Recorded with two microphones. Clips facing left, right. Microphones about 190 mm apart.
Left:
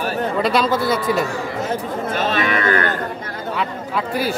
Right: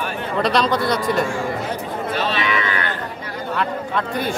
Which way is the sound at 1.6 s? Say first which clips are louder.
Left 2 dB; 45° left (ahead or behind).